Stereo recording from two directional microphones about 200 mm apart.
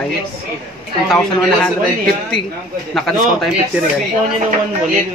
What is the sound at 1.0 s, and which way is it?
Speech, centre (ahead or behind).